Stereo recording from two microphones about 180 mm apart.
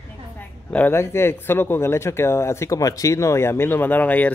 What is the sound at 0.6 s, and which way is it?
Speech, 10° left (ahead or behind).